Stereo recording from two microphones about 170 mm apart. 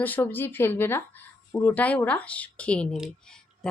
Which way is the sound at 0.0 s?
10° left (ahead or behind).